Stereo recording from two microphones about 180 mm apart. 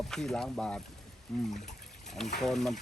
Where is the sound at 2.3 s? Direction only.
Centre (ahead or behind).